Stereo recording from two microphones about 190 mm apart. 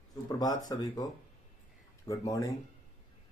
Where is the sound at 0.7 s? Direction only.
20° left (ahead or behind).